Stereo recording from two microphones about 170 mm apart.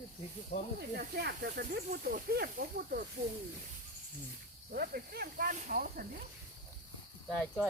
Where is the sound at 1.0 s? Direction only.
70° right (ahead or behind).